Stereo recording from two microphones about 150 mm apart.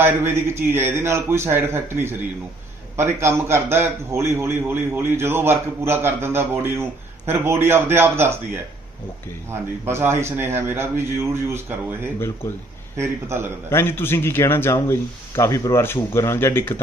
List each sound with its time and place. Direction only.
0.0 s a man's voice: 15° right (ahead or behind)
9.5 s a man's voice: 15° right (ahead or behind)
13.0 s a man's voice: 15° right (ahead or behind)
13.7 s speech: 15° left (ahead or behind)